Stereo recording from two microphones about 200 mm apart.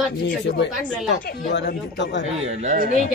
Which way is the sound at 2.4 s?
35° right (ahead or behind).